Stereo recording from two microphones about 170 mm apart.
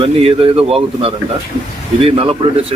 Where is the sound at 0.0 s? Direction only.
35° right (ahead or behind).